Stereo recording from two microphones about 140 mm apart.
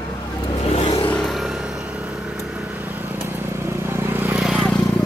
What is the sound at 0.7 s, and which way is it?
Vehicle, 40° left (ahead or behind).